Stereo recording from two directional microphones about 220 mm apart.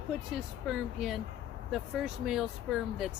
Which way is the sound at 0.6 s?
Centre (ahead or behind).